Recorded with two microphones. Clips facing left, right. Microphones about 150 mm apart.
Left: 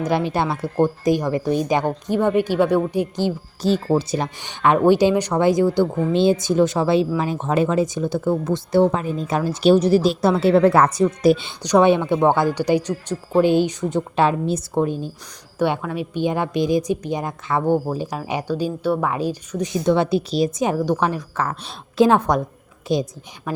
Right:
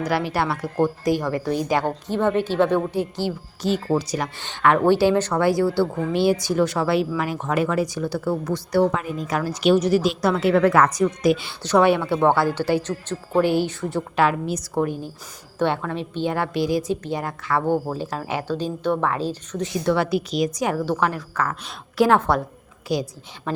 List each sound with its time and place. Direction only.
0.0 s speech: 20° left (ahead or behind)
3.6 s speech: 30° left (ahead or behind)
4.4 s speech: 15° left (ahead or behind); by 11.4 s 30° left (ahead or behind)
11.4 s speech: 20° left (ahead or behind)
21.4 s speech: 30° left (ahead or behind)